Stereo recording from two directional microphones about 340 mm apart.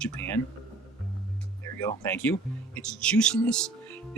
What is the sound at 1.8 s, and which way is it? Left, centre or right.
Speech, centre.